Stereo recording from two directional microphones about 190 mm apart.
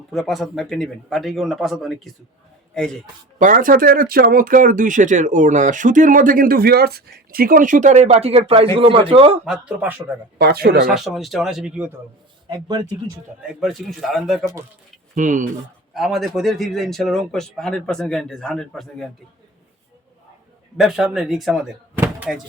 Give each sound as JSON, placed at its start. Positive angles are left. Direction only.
{"t": 0.1, "sound": "a man's voice", "side_deg": 0}
{"t": 3.3, "sound": "speech", "side_deg": -45}
{"t": 9.5, "sound": "a man's voice", "side_deg": -5}
{"t": 10.3, "sound": "speech", "side_deg": -55}
{"t": 10.8, "sound": "a man's voice", "side_deg": 0}
{"t": 13.6, "sound": "a man's voice", "side_deg": 0}
{"t": 15.1, "sound": "speech", "side_deg": -40}
{"t": 15.9, "sound": "a man's voice", "side_deg": 0}
{"t": 20.7, "sound": "a man's voice", "side_deg": 0}
{"t": 22.0, "sound": "a sound", "side_deg": -10}